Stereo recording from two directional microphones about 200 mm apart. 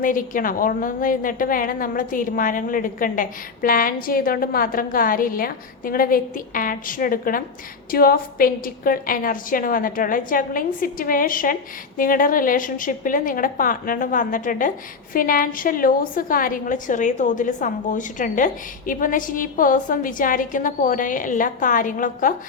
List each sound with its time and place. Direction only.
0.0 s a woman's voice: 45° left (ahead or behind)